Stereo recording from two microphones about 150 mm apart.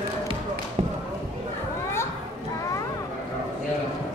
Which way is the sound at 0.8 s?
45° right (ahead or behind).